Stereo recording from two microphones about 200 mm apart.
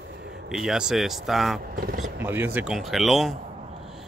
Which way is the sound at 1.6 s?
45° right (ahead or behind).